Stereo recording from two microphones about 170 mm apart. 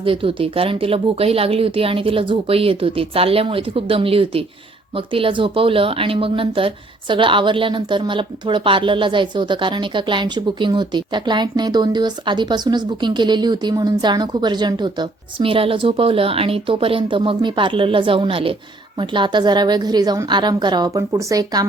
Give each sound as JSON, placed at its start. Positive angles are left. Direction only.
{"t": 0.0, "sound": "speech", "side_deg": -30}